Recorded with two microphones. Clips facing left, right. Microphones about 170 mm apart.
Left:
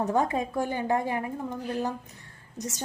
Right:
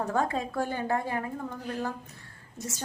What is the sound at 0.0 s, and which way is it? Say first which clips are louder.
A woman's voice: left 3 dB; 20° left (ahead or behind).